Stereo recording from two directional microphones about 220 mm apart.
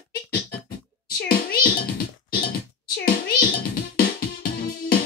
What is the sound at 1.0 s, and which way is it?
Meow, 40° left (ahead or behind).